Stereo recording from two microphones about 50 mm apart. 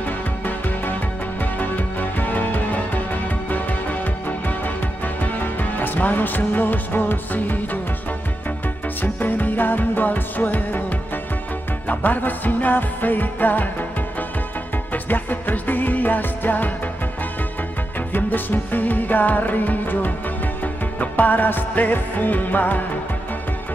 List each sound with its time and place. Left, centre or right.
1.4 s music: left
9.0 s music: left
14.9 s music: left
18.1 s music: left